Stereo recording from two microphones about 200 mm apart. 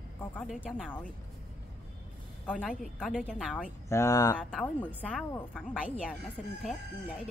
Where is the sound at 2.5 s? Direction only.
5° left (ahead or behind).